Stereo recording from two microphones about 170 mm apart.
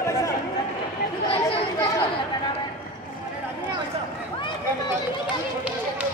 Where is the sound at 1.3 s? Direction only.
35° left (ahead or behind).